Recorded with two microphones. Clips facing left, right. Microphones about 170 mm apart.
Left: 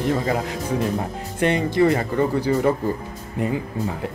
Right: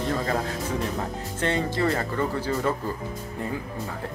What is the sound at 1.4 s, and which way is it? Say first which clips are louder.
Speech: left 7 dB; 15° left (ahead or behind).